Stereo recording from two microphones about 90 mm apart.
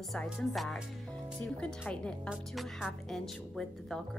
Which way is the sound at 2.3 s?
5° right (ahead or behind).